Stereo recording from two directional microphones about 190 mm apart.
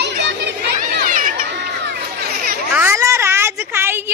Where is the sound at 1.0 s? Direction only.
45° right (ahead or behind).